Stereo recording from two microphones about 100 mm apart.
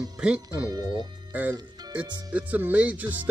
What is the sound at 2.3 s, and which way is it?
Speech, 15° right (ahead or behind).